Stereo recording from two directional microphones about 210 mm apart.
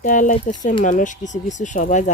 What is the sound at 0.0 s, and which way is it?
Speech, 40° left (ahead or behind).